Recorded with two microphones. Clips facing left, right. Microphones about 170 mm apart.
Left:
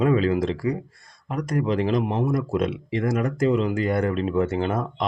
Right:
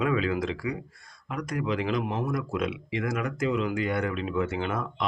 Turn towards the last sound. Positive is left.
turn(degrees=35)  # may be behind; listen again after turning